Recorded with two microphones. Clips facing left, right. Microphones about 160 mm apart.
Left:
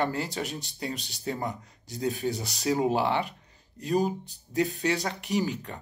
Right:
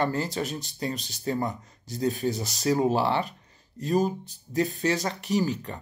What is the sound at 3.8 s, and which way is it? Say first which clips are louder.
Speech: right 2 dB; 40° right (ahead or behind).